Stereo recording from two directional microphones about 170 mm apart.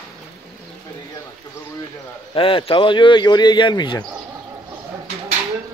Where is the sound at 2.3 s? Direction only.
30° left (ahead or behind).